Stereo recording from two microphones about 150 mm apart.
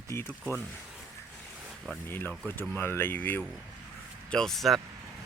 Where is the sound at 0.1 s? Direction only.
15° left (ahead or behind).